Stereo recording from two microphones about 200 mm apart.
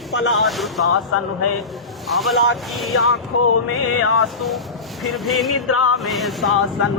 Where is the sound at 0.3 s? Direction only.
Centre (ahead or behind).